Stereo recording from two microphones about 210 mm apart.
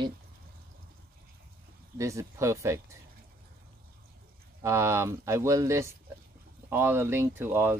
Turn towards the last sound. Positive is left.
turn(degrees=-10)  # may be behind; listen again after turning